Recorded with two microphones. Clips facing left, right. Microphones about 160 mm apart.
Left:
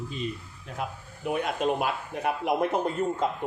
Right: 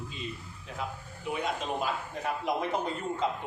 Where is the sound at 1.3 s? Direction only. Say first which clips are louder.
Left 5 dB; 60° left (ahead or behind).